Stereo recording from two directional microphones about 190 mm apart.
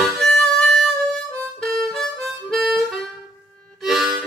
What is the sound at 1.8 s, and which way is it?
Harmonica, centre (ahead or behind).